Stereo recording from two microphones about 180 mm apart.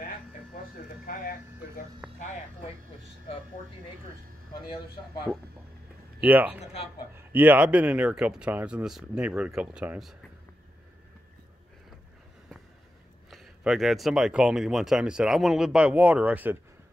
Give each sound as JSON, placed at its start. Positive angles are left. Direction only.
{"t": 1.0, "sound": "speech", "side_deg": 55}
{"t": 6.2, "sound": "speech", "side_deg": -10}
{"t": 6.6, "sound": "a man's voice", "side_deg": 35}
{"t": 7.2, "sound": "speech", "side_deg": -10}
{"t": 13.3, "sound": "speech", "side_deg": 0}